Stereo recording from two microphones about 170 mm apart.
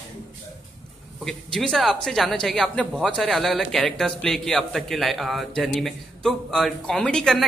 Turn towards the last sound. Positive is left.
turn(degrees=5)  # may be behind; listen again after turning